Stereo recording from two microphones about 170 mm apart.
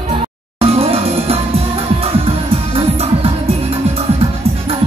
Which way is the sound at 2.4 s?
35° right (ahead or behind).